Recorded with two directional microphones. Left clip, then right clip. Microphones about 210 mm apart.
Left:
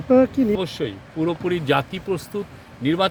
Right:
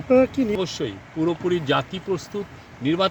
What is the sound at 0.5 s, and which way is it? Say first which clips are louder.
Speech: left 1 dB; 5° left (ahead or behind).